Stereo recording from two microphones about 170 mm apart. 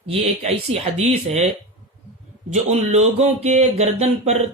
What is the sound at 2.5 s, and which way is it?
Speech, 40° right (ahead or behind).